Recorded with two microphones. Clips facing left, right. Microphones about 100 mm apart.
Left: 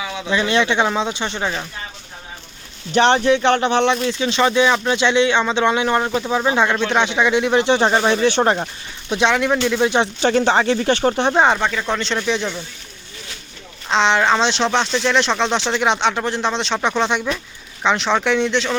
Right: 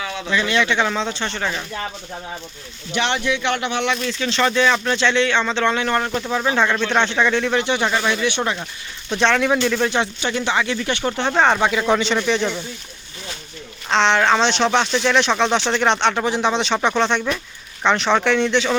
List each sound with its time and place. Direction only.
0.0 s a sound: 5° left (ahead or behind)
0.3 s speech: 20° left (ahead or behind)
2.9 s speech: 35° left (ahead or behind)
4.0 s speech: 20° left (ahead or behind)
7.6 s speech: 30° left (ahead or behind)
9.0 s speech: 10° left (ahead or behind)
9.8 s speech: 20° left (ahead or behind)
10.2 s speech: 40° left (ahead or behind)
11.3 s speech: 5° left (ahead or behind)
11.6 s speech: 10° right (ahead or behind)
13.9 s speech: 5° left (ahead or behind)